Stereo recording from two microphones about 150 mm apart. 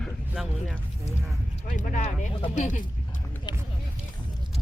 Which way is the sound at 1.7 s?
55° left (ahead or behind).